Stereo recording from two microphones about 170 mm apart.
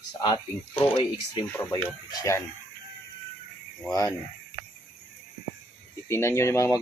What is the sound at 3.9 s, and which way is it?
Speech, 20° left (ahead or behind).